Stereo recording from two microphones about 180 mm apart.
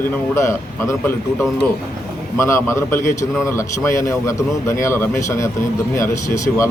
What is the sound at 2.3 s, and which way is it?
A man's voice, 15° left (ahead or behind).